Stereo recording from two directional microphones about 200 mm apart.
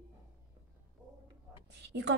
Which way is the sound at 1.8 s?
60° right (ahead or behind).